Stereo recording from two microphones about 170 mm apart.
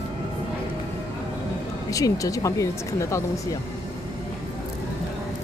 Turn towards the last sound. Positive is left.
turn(degrees=20)  # may be behind; listen again after turning